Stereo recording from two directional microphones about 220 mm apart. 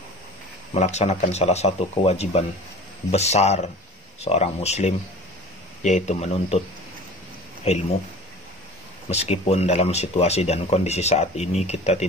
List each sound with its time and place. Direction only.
0.7 s speech: 30° left (ahead or behind)
7.7 s speech: 30° left (ahead or behind)
9.1 s speech: 30° left (ahead or behind)